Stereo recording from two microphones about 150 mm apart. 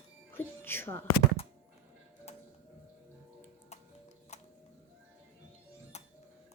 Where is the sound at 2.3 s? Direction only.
45° left (ahead or behind).